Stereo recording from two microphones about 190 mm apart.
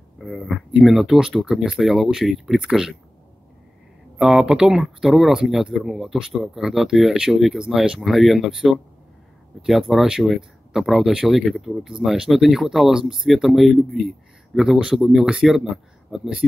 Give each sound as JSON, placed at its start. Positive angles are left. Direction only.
{"t": 0.2, "sound": "speech", "side_deg": 0}
{"t": 4.2, "sound": "speech", "side_deg": -5}